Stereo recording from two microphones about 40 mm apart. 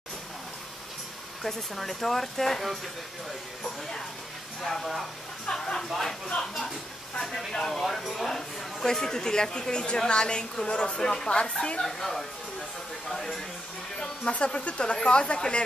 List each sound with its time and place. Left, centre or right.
1.4 s speech: centre
4.6 s speech: centre
5.5 s speech: centre
8.0 s speech: centre
8.3 s speech: centre; by 11.8 s left
11.8 s speech: centre
14.3 s speech: left